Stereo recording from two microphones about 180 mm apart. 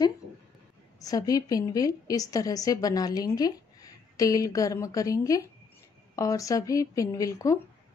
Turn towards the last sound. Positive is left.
turn(degrees=20)  # may be behind; listen again after turning